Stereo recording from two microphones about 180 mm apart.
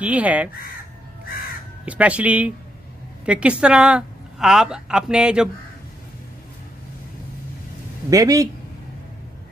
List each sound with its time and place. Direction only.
0.0 s speech: 10° right (ahead or behind)
1.9 s a woman's voice: 5° right (ahead or behind)
8.1 s speech: 20° right (ahead or behind)